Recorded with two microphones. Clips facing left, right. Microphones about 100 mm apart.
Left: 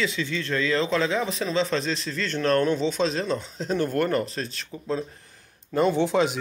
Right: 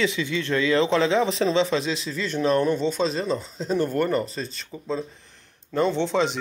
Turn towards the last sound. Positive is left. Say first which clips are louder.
# left 1 dB
turn(degrees=5)  # may be behind; listen again after turning